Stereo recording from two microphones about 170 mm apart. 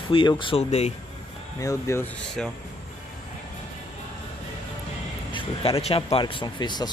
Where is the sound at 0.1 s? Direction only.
30° left (ahead or behind).